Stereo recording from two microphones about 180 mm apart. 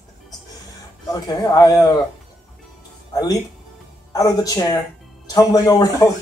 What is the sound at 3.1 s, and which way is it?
A man's voice, 20° left (ahead or behind).